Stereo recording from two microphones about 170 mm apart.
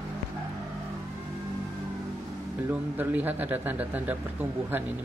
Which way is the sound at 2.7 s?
10° right (ahead or behind).